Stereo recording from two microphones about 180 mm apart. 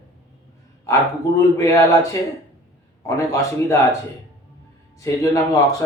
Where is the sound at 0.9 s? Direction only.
15° left (ahead or behind).